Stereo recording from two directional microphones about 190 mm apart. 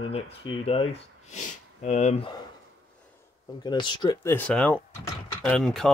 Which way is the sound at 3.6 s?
25° left (ahead or behind).